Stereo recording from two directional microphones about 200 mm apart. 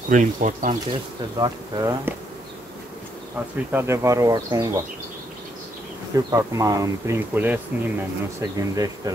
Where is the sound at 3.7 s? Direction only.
15° right (ahead or behind).